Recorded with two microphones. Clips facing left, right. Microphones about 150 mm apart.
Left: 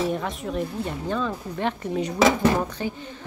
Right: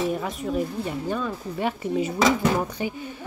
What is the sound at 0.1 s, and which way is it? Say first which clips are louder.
Speech: right 1 dB; 5° right (ahead or behind).